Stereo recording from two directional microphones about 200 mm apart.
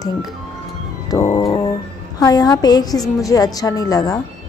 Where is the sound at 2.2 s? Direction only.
20° left (ahead or behind).